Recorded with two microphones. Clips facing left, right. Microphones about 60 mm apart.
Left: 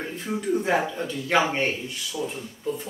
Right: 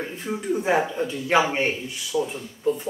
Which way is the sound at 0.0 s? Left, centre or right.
Centre.